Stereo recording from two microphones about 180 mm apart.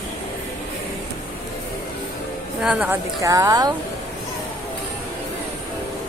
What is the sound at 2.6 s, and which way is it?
Speech, 5° right (ahead or behind).